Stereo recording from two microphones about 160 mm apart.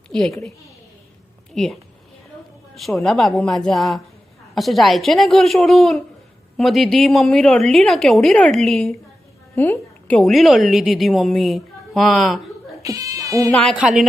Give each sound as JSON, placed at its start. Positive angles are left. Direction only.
{"t": 0.1, "sound": "a woman's voice", "side_deg": 5}
{"t": 1.5, "sound": "a woman's voice", "side_deg": 5}
{"t": 12.8, "sound": "speech", "side_deg": -20}
{"t": 13.5, "sound": "a woman's voice", "side_deg": 5}
{"t": 13.7, "sound": "a woman's voice", "side_deg": -5}